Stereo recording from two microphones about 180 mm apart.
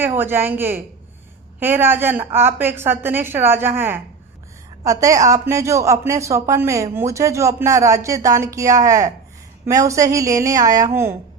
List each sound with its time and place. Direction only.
0.0 s a woman's voice: 10° right (ahead or behind)